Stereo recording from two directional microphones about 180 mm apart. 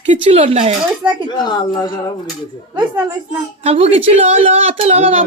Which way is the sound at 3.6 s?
35° right (ahead or behind).